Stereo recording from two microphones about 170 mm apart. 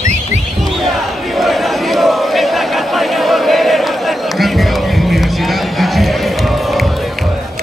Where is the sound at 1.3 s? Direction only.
Centre (ahead or behind).